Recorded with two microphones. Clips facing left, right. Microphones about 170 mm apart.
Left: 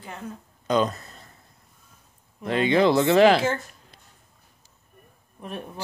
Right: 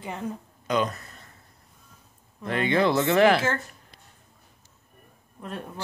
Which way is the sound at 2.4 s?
20° left (ahead or behind).